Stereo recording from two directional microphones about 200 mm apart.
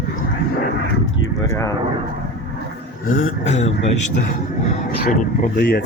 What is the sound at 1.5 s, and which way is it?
Speech, 15° left (ahead or behind).